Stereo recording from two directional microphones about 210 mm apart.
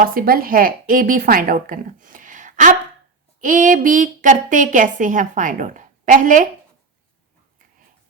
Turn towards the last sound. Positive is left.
turn(degrees=-40)  # may be behind; listen again after turning